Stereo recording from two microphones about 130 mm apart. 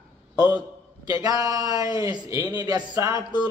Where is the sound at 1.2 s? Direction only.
30° right (ahead or behind).